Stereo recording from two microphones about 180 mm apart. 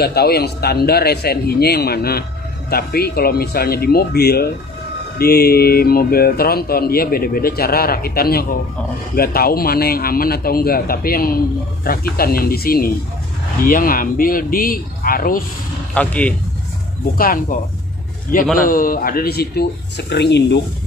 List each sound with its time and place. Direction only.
0.0 s a man's voice: 60° left (ahead or behind)
15.9 s speech: 5° left (ahead or behind)
17.0 s speech: 50° left (ahead or behind)
18.6 s a man's voice: 50° left (ahead or behind); by 20.6 s 70° left (ahead or behind)